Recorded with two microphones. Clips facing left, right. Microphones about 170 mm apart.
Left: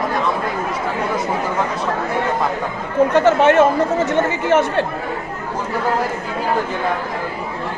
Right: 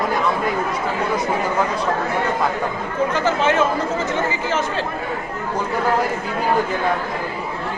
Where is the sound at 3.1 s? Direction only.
65° left (ahead or behind).